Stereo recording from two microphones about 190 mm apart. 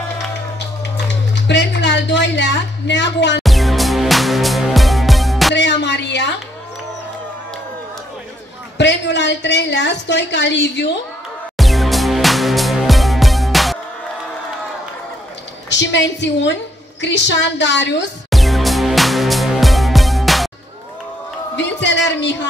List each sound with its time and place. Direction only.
1.3 s a woman's voice: 65° left (ahead or behind)
3.4 s music: centre (ahead or behind)
5.5 s a sound: 65° left (ahead or behind)
8.7 s a woman's voice: 65° left (ahead or behind)
11.5 s music: centre (ahead or behind)
15.7 s a woman's voice: 70° left (ahead or behind)
18.3 s music: centre (ahead or behind)
21.5 s a sound: 70° left (ahead or behind)